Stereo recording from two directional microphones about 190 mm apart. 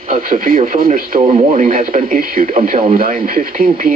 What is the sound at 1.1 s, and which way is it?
Speech, 30° right (ahead or behind).